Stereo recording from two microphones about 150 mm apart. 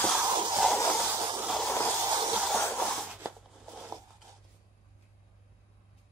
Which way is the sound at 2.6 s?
10° left (ahead or behind).